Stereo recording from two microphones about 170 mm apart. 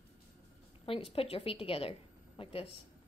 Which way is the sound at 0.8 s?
35° left (ahead or behind).